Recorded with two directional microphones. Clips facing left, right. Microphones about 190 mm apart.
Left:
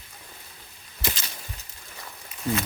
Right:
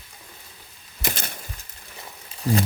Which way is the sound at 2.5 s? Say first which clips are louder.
Right 4 dB; 35° right (ahead or behind).